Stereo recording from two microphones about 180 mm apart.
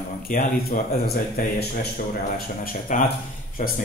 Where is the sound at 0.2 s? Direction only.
55° left (ahead or behind).